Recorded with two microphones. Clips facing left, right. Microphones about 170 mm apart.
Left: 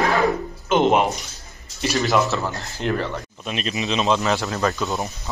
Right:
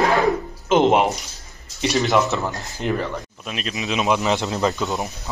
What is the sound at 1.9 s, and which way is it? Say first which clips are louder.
Speech: right 1 dB; 20° right (ahead or behind).